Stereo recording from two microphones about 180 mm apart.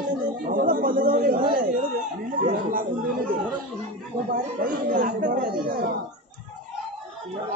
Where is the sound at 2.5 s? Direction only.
50° right (ahead or behind).